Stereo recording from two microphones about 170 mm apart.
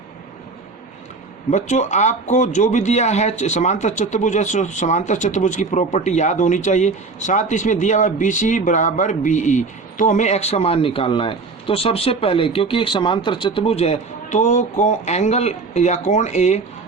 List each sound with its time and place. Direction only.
1.5 s a man's voice: 45° left (ahead or behind)